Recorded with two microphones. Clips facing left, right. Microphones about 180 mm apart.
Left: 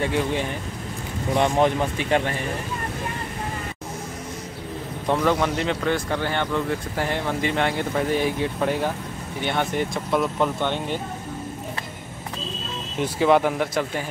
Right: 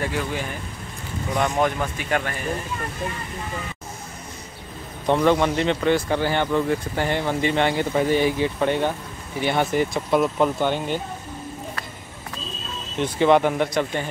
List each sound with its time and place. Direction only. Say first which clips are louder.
0.0 s speech: left 3 dB; 25° left (ahead or behind)
5.0 s speech: right 3 dB; centre (ahead or behind)
13.0 s speech: right 1 dB; centre (ahead or behind)